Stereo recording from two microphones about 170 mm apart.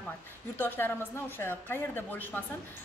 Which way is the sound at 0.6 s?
10° left (ahead or behind).